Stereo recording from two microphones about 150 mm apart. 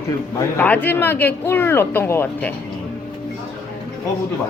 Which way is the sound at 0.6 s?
10° left (ahead or behind).